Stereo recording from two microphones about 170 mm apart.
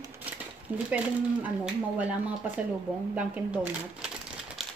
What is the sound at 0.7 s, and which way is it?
Speech, 10° right (ahead or behind).